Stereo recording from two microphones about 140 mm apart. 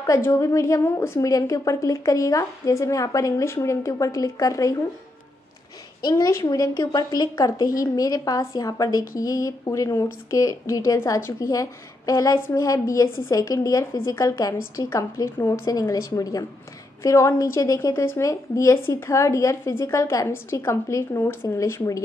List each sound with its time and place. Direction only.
0.0 s speech: 20° left (ahead or behind)
5.9 s speech: 30° left (ahead or behind)